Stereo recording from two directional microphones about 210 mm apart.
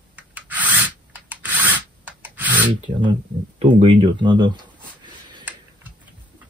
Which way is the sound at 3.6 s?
25° right (ahead or behind).